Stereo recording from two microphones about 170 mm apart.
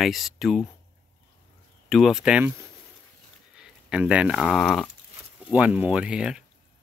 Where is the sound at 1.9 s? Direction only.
Centre (ahead or behind).